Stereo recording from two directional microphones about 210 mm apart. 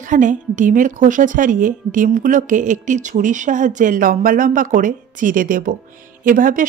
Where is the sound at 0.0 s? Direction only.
40° right (ahead or behind).